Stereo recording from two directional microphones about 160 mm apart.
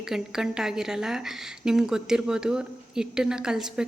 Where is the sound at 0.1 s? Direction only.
5° right (ahead or behind).